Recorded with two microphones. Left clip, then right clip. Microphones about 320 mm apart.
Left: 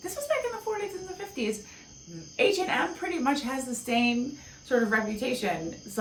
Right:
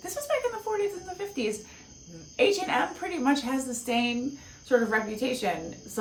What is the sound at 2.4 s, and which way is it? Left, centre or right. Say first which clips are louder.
A woman's voice: right 1 dB; centre.